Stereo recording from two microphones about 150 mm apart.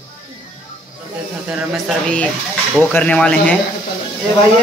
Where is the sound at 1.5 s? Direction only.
5° right (ahead or behind).